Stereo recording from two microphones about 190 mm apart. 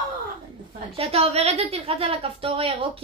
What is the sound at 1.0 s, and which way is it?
A woman's voice, 30° right (ahead or behind).